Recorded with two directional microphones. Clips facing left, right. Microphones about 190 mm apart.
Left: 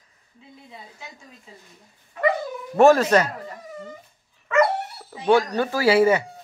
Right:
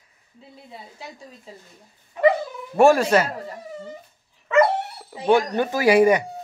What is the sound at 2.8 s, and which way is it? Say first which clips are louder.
Speech: even; 10° right (ahead or behind).